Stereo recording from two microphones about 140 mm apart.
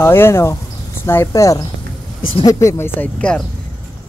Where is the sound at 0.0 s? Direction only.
15° left (ahead or behind).